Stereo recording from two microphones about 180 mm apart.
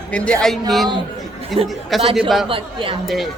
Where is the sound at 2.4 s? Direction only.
30° right (ahead or behind).